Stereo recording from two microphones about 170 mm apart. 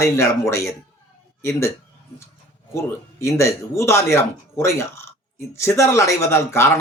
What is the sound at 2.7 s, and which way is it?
Speech, 15° left (ahead or behind).